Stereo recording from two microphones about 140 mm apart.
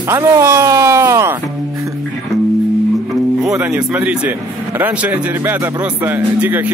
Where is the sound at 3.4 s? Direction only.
5° right (ahead or behind).